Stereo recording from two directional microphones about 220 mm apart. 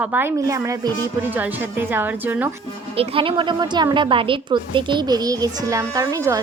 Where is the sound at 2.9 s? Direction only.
25° right (ahead or behind).